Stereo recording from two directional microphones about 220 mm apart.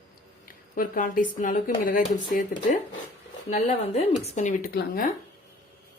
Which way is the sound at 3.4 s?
30° left (ahead or behind).